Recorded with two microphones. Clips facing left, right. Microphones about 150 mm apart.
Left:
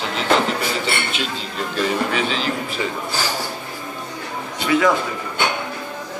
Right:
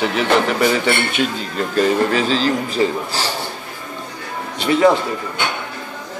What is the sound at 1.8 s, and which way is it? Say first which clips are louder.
A man's voice: right 5 dB; 35° right (ahead or behind).